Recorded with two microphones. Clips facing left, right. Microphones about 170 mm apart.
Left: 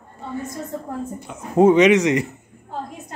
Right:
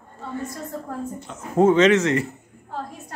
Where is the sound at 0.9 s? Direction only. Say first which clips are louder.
Left 2 dB; 10° left (ahead or behind).